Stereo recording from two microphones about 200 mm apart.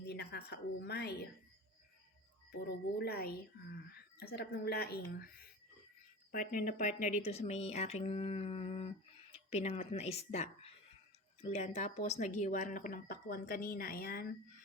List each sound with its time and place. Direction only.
0.0 s speech: 55° left (ahead or behind)
2.5 s speech: 55° left (ahead or behind)
6.3 s speech: 45° left (ahead or behind)